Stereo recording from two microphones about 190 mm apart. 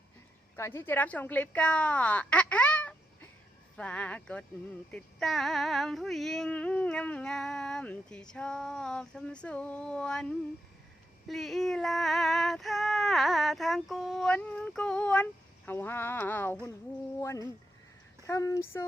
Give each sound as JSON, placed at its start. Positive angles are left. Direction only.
{"t": 0.5, "sound": "a woman's voice", "side_deg": 15}
{"t": 4.9, "sound": "a sound", "side_deg": 5}
{"t": 17.2, "sound": "a woman's voice", "side_deg": 15}